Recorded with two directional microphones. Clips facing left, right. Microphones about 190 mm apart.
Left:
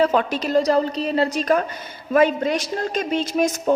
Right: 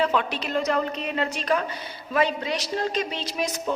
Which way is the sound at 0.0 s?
40° left (ahead or behind).